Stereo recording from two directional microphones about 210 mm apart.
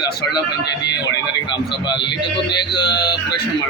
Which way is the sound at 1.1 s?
20° left (ahead or behind).